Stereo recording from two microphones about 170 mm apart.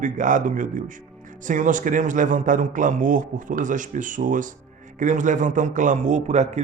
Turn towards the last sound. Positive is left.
turn(degrees=-40)  # may be behind; listen again after turning